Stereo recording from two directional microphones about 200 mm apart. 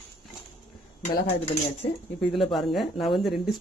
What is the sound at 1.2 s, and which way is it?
Speech, 30° left (ahead or behind).